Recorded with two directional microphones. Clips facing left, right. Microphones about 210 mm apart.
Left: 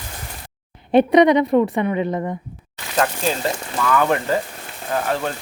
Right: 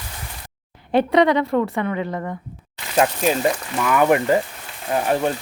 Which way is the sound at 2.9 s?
15° right (ahead or behind).